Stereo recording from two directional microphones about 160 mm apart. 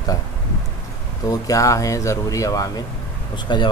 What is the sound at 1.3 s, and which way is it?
Speech, 20° left (ahead or behind).